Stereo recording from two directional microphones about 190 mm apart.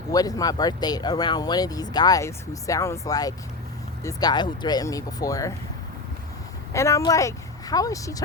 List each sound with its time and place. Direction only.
0.1 s speech: 20° left (ahead or behind)
6.7 s speech: 15° left (ahead or behind)